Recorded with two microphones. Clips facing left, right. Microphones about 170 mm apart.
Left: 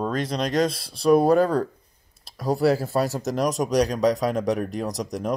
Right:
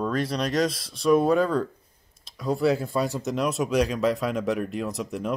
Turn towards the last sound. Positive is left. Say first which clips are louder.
# left 2 dB
turn(degrees=40)  # may be behind; listen again after turning